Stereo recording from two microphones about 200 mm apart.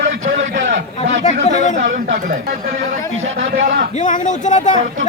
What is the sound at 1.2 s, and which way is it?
Chatter, 35° left (ahead or behind).